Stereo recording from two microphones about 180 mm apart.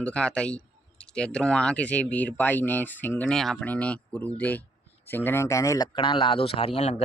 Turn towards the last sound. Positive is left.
turn(degrees=35)  # may be behind; listen again after turning